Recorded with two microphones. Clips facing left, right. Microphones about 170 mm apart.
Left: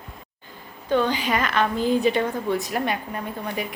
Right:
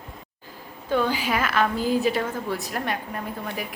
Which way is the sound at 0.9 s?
10° right (ahead or behind).